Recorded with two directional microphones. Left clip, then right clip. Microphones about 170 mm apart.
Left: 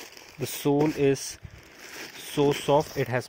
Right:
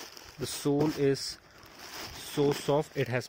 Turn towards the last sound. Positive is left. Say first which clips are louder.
# left 4 dB
turn(degrees=-5)  # may be behind; listen again after turning